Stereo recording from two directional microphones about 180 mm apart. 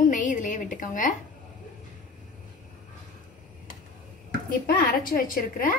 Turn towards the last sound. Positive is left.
turn(degrees=50)  # may be behind; listen again after turning